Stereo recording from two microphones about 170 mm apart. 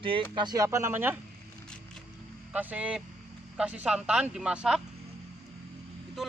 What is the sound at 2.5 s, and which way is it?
Speech, 10° right (ahead or behind).